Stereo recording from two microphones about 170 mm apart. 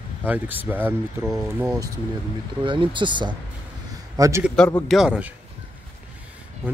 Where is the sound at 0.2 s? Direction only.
10° right (ahead or behind).